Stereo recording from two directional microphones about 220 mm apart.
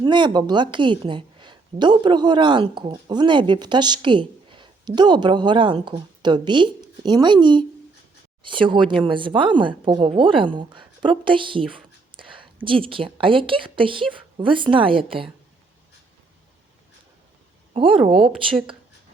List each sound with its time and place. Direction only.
0.0 s a woman's voice: 20° right (ahead or behind)